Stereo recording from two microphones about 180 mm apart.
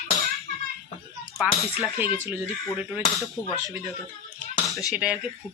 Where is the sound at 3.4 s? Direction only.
20° left (ahead or behind).